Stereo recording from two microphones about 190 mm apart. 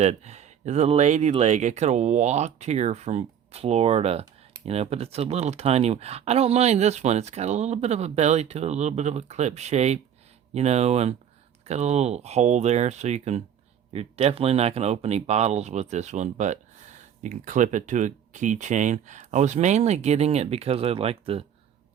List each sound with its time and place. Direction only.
0.0 s speech: 35° right (ahead or behind)